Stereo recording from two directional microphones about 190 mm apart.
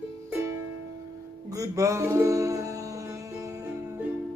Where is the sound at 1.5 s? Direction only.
15° right (ahead or behind).